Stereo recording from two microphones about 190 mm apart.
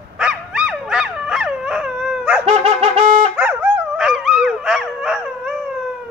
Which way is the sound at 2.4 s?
35° right (ahead or behind).